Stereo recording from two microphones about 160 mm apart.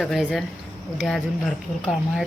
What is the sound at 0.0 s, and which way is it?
A child's voice, centre (ahead or behind).